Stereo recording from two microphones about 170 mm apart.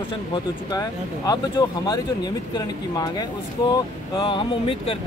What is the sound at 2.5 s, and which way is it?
Speech, 25° left (ahead or behind).